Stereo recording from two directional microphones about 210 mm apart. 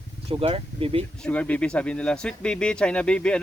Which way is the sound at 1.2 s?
5° left (ahead or behind).